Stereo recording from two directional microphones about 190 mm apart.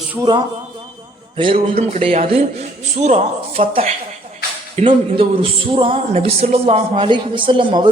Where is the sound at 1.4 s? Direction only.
25° right (ahead or behind).